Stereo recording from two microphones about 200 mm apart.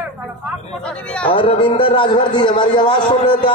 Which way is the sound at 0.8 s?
5° left (ahead or behind).